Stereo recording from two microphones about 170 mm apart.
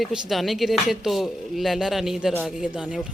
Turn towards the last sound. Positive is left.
turn(degrees=-5)  # may be behind; listen again after turning